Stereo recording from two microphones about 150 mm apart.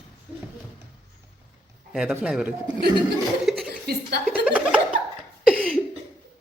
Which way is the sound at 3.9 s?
90° right.